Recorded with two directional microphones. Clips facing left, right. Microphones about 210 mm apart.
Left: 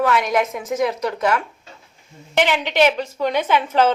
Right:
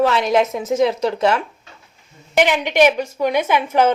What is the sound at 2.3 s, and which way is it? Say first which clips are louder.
A woman's voice: right 3 dB; 15° right (ahead or behind).